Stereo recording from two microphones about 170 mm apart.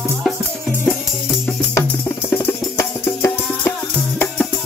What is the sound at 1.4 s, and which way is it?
Music, 15° left (ahead or behind).